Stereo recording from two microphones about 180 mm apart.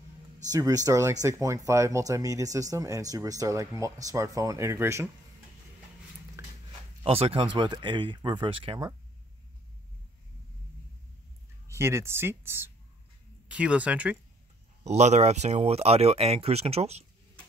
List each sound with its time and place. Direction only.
0.5 s speech: 20° right (ahead or behind)
7.0 s speech: 30° right (ahead or behind)
11.7 s speech: 15° right (ahead or behind)
14.8 s speech: 40° right (ahead or behind)